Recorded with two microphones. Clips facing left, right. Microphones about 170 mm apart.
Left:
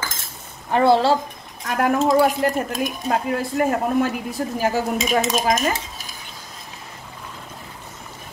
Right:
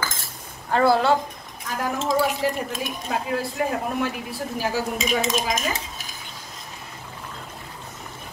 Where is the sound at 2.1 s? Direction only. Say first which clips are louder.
Left 5 dB; 50° left (ahead or behind).